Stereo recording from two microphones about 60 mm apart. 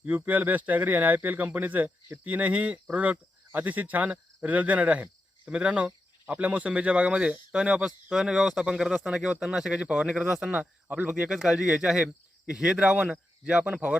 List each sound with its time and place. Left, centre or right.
0.3 s speech: right